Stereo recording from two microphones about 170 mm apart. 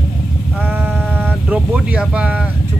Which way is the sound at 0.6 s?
10° right (ahead or behind).